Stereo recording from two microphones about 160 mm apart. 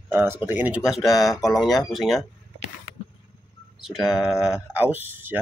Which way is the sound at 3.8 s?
Centre (ahead or behind).